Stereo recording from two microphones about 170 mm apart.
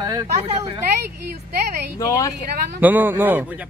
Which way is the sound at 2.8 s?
10° right (ahead or behind).